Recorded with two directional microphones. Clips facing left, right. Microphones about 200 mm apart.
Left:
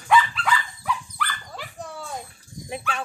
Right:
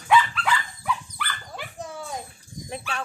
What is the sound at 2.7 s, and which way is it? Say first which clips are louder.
Dog: left 2 dB; 5° left (ahead or behind).